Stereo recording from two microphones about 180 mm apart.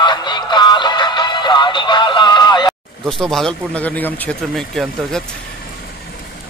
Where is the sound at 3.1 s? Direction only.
Centre (ahead or behind).